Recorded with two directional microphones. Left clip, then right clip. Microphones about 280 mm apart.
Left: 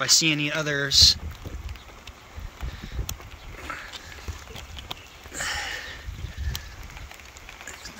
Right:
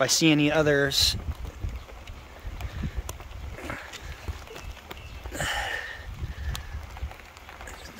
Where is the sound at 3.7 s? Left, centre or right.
Centre.